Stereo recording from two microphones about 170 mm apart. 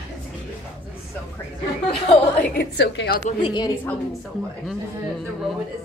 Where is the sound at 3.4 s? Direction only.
25° left (ahead or behind).